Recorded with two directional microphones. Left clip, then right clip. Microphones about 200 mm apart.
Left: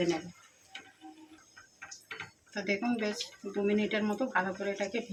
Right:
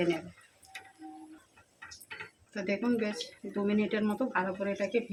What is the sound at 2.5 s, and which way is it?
Speech, 15° left (ahead or behind).